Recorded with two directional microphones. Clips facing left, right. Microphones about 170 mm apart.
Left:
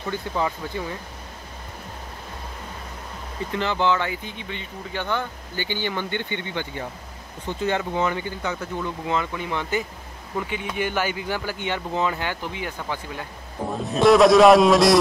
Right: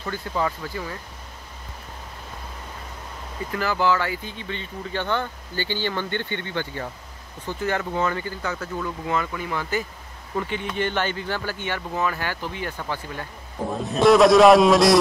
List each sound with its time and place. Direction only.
0.1 s speech: 20° left (ahead or behind)
3.5 s speech: 25° left (ahead or behind)
13.8 s a man's voice: centre (ahead or behind)